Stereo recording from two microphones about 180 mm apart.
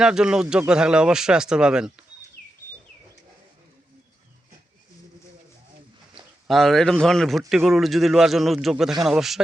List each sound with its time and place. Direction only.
0.0 s speech: 5° right (ahead or behind)
6.1 s speech: centre (ahead or behind)